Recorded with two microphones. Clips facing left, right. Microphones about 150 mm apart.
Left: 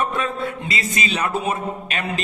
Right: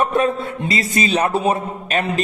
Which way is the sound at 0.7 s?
40° right (ahead or behind).